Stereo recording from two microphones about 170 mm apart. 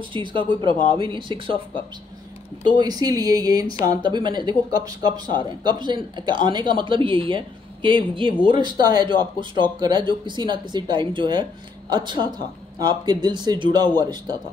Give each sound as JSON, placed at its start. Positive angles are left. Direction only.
{"t": 0.1, "sound": "speech", "side_deg": -30}
{"t": 2.8, "sound": "speech", "side_deg": -20}